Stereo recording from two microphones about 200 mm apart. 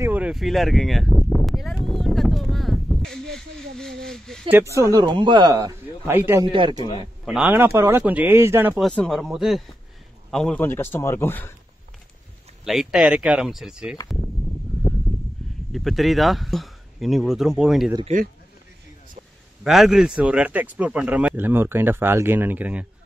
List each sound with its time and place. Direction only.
0.0 s a sound: 5° right (ahead or behind)
4.5 s speech: 15° right (ahead or behind)
6.4 s a man's voice: 25° right (ahead or behind)
7.2 s speech: 5° right (ahead or behind)
8.8 s a man's voice: 5° left (ahead or behind)
12.6 s speech: centre (ahead or behind)
14.8 s a sound: centre (ahead or behind)
15.7 s speech: centre (ahead or behind)
19.6 s speech: centre (ahead or behind)